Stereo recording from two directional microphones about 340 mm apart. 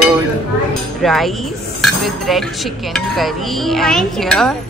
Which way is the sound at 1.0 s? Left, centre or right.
Centre.